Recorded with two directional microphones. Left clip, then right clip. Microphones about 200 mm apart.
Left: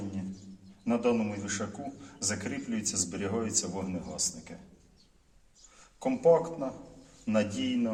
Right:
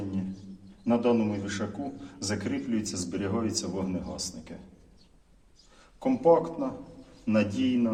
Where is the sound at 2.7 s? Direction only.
25° left (ahead or behind).